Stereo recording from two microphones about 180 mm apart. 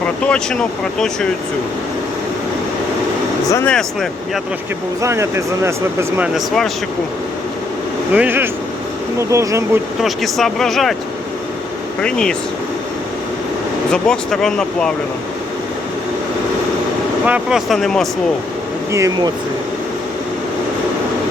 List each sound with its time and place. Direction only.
0.0 s speech: 5° left (ahead or behind)
3.5 s speech: 10° left (ahead or behind)
5.0 s speech: 15° right (ahead or behind)
8.1 s speech: 10° right (ahead or behind)
10.0 s speech: centre (ahead or behind)
12.0 s speech: 5° left (ahead or behind)
13.9 s speech: 5° left (ahead or behind)
17.2 s speech: 5° right (ahead or behind)
18.9 s speech: 15° right (ahead or behind)